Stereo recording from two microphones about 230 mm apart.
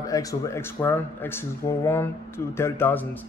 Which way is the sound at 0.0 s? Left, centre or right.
Centre.